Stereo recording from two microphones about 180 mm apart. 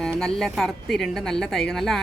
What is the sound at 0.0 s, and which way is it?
A woman's voice, centre (ahead or behind).